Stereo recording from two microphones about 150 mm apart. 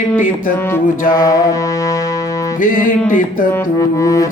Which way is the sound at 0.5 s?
15° left (ahead or behind).